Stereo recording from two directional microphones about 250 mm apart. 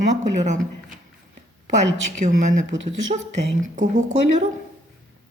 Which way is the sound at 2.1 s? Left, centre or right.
Right.